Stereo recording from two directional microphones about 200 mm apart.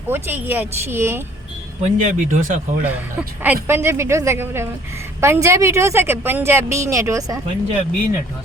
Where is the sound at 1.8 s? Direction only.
35° right (ahead or behind).